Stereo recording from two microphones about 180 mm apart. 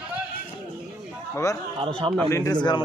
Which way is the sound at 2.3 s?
15° left (ahead or behind).